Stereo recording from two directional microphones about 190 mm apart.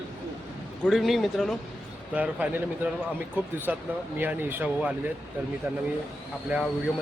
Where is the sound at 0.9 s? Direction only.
Centre (ahead or behind).